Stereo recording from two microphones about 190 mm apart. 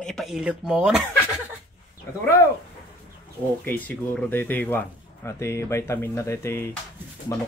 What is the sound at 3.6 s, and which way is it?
Speech, 10° left (ahead or behind).